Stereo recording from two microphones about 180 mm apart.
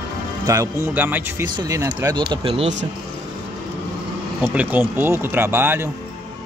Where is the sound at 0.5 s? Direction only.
15° right (ahead or behind); by 2.7 s 30° right (ahead or behind).